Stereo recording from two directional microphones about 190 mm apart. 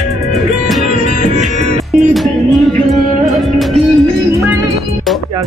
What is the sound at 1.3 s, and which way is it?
Music, 35° right (ahead or behind).